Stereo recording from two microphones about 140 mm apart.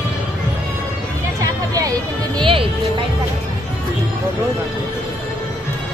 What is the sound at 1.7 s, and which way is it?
Music, 25° right (ahead or behind).